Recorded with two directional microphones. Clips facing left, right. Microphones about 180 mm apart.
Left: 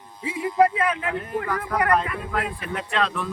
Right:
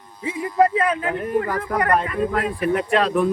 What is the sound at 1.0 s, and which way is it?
Speech, 35° right (ahead or behind).